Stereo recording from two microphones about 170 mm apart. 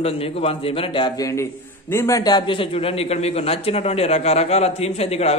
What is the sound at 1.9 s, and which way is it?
A man's voice, 15° left (ahead or behind).